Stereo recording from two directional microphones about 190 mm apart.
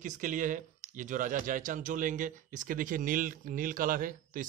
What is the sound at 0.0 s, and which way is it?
Speech, 40° right (ahead or behind).